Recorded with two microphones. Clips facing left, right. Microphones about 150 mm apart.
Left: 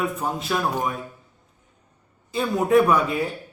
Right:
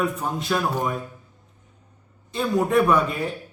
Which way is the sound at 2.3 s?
5° left (ahead or behind).